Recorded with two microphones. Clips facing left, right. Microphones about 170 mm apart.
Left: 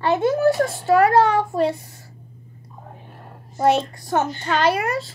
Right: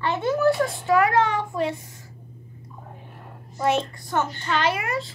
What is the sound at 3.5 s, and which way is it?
A child's voice, 35° left (ahead or behind).